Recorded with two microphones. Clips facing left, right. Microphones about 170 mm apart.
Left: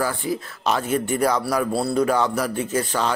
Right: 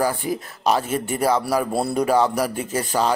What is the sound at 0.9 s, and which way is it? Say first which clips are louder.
Speech: left 1 dB; 5° right (ahead or behind).